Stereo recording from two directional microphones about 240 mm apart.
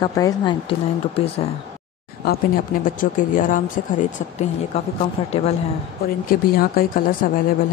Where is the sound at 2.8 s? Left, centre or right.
Left.